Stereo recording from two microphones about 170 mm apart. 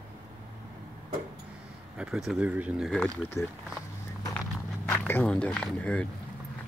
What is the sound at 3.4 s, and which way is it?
Speech, 15° left (ahead or behind).